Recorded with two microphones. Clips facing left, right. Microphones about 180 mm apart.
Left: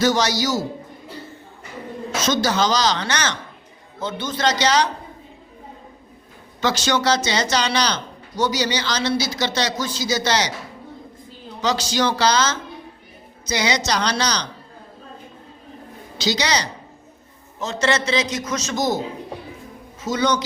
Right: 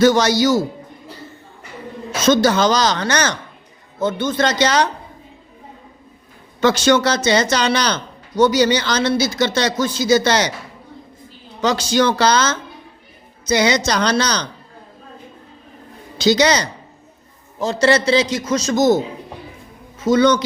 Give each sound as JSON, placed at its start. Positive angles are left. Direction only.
{"t": 0.0, "sound": "a man's voice", "side_deg": -55}
{"t": 2.2, "sound": "a man's voice", "side_deg": -55}
{"t": 6.6, "sound": "a man's voice", "side_deg": -55}
{"t": 11.6, "sound": "a man's voice", "side_deg": -55}
{"t": 16.1, "sound": "a man's voice", "side_deg": -50}
{"t": 17.6, "sound": "a man's voice", "side_deg": -35}
{"t": 20.1, "sound": "a man's voice", "side_deg": -55}